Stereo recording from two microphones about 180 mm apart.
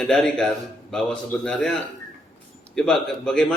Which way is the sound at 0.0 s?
5° left (ahead or behind).